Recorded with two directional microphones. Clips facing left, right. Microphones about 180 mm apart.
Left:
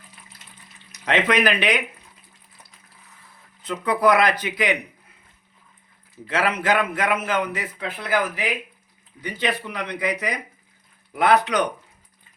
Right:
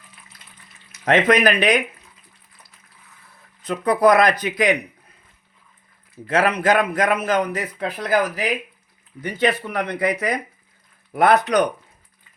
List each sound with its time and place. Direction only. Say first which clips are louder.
1.0 s speech: right 4 dB; 45° right (ahead or behind)
3.7 s a man's voice: right 3 dB; 40° right (ahead or behind)
6.2 s a man's voice: right 4 dB; 45° right (ahead or behind)